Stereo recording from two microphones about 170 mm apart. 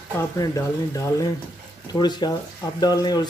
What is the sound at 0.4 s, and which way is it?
Speech, 20° left (ahead or behind).